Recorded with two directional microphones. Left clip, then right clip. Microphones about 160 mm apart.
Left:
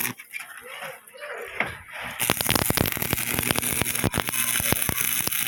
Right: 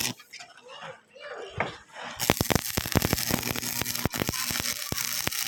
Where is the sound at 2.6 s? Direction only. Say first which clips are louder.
Left 3 dB; 10° right (ahead or behind).